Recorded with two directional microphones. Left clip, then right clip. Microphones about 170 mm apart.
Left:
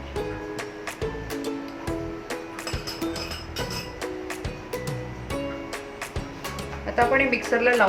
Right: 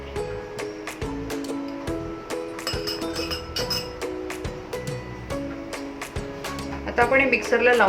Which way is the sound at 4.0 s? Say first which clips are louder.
Right 2 dB; centre (ahead or behind).